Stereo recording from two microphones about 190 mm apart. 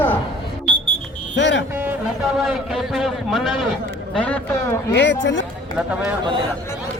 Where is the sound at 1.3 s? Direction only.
70° left (ahead or behind).